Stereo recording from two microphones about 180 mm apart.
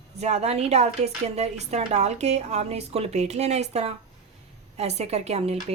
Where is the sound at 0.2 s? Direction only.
40° right (ahead or behind).